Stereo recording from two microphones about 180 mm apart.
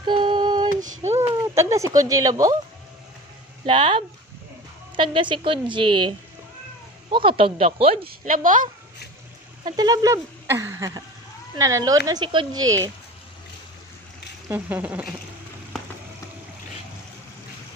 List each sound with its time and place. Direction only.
0.0 s female singing: 25° right (ahead or behind)
0.7 s child singing: 45° right (ahead or behind)
1.1 s a sound: 15° right (ahead or behind)
2.0 s a woman's voice: 20° right (ahead or behind)
3.6 s a woman's voice: 30° right (ahead or behind)
8.0 s a woman's voice: 50° right (ahead or behind)
9.7 s a woman's voice: 20° right (ahead or behind)
14.5 s speech: 10° right (ahead or behind)